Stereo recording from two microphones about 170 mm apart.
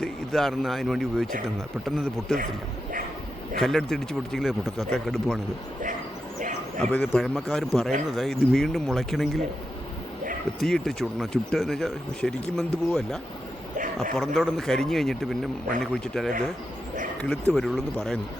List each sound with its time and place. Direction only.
0.0 s speech: centre (ahead or behind)
3.6 s speech: centre (ahead or behind)
6.7 s speech: 5° left (ahead or behind)
10.6 s speech: centre (ahead or behind)
13.7 s a sound: 50° right (ahead or behind)
14.2 s speech: centre (ahead or behind)
17.5 s speech: centre (ahead or behind)